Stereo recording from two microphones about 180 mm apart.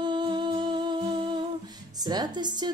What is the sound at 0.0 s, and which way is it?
Humming, 25° right (ahead or behind).